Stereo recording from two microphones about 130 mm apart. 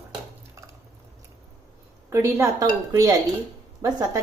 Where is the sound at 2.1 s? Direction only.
20° right (ahead or behind).